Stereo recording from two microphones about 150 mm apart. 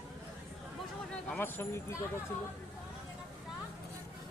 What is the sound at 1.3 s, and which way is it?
Speech, 15° left (ahead or behind).